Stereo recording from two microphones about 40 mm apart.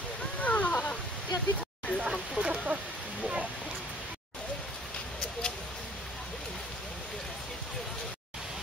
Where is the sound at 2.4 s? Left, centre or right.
Right.